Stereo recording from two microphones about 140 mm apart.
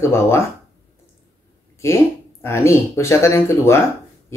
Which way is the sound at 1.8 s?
20° left (ahead or behind).